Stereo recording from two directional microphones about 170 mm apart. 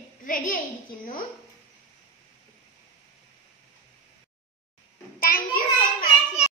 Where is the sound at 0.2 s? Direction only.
55° left (ahead or behind).